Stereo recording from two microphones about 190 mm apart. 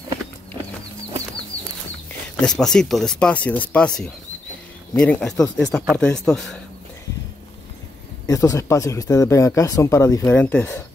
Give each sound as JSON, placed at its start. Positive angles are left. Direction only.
{"t": 2.4, "sound": "speech", "side_deg": 5}
{"t": 8.3, "sound": "speech", "side_deg": 15}